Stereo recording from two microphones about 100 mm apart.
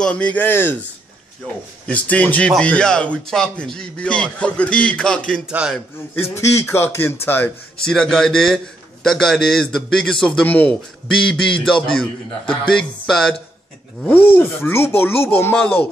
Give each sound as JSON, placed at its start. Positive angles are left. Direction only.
{"t": 0.0, "sound": "speech", "side_deg": 15}
{"t": 1.4, "sound": "speech", "side_deg": 10}
{"t": 6.1, "sound": "speech", "side_deg": 25}
{"t": 7.8, "sound": "a man's voice", "side_deg": 5}
{"t": 14.0, "sound": "speech", "side_deg": 20}